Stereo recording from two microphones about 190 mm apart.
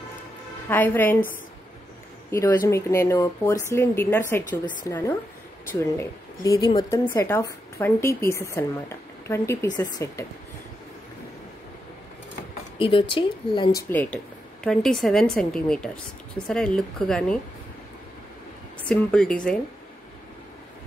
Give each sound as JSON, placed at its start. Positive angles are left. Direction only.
{"t": 0.7, "sound": "speech", "side_deg": 10}
{"t": 2.3, "sound": "speech", "side_deg": 10}
{"t": 12.7, "sound": "a woman's voice", "side_deg": 25}
{"t": 18.9, "sound": "a woman's voice", "side_deg": 5}